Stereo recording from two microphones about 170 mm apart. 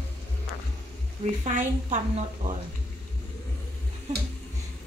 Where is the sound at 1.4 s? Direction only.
50° right (ahead or behind).